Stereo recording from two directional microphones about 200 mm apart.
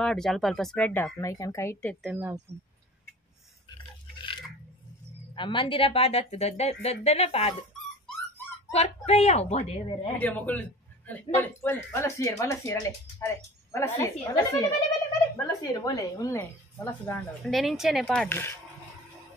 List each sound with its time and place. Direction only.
0.0 s speech: centre (ahead or behind)
2.0 s speech: 5° right (ahead or behind)
4.2 s a sound: 25° left (ahead or behind)
5.3 s speech: 25° left (ahead or behind)
8.7 s speech: 30° left (ahead or behind)
10.1 s speech: 10° left (ahead or behind)
17.4 s speech: centre (ahead or behind)